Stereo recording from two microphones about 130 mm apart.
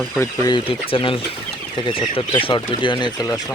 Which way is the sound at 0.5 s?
45° left (ahead or behind).